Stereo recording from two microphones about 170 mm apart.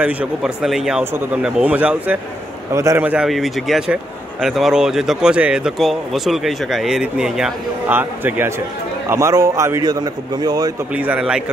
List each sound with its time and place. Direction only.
0.0 s a man's voice: 5° right (ahead or behind); by 10.7 s 25° right (ahead or behind)
11.0 s speech: 5° right (ahead or behind)